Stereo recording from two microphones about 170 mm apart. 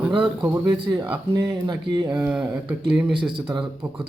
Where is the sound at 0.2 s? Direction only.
15° right (ahead or behind).